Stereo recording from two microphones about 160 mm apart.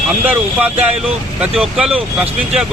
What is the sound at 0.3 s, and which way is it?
Speech, 10° right (ahead or behind).